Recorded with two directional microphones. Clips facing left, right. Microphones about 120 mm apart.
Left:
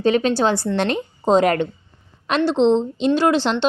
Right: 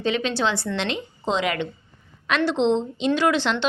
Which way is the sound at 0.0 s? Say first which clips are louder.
Left 6 dB; 40° left (ahead or behind).